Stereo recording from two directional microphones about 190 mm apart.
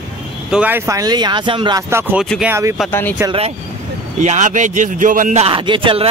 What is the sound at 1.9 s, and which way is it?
Speech, 10° right (ahead or behind).